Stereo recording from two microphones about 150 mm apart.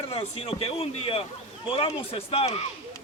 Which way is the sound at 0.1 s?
40° left (ahead or behind).